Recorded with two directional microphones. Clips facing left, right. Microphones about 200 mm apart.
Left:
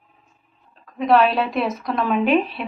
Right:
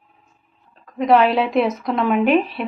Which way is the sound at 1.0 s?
Centre (ahead or behind).